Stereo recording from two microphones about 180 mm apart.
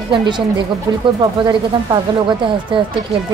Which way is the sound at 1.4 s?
25° right (ahead or behind).